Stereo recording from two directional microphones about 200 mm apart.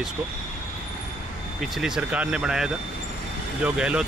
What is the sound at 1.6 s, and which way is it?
Speech, centre (ahead or behind).